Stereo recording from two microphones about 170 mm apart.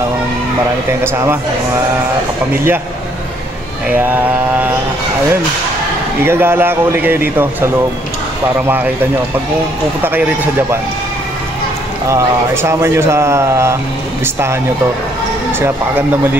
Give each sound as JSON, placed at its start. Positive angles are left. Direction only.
{"t": 1.0, "sound": "a man's voice", "side_deg": -15}
{"t": 2.5, "sound": "a man's voice", "side_deg": -10}
{"t": 3.9, "sound": "a man's voice", "side_deg": -10}
{"t": 6.2, "sound": "a man's voice", "side_deg": -15}
{"t": 10.0, "sound": "a man's voice", "side_deg": -10}
{"t": 12.6, "sound": "a man's voice", "side_deg": -15}